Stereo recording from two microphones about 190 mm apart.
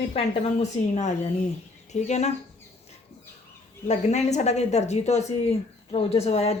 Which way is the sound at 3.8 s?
35° left (ahead or behind).